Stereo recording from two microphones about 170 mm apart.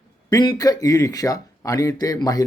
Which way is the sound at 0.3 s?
20° left (ahead or behind).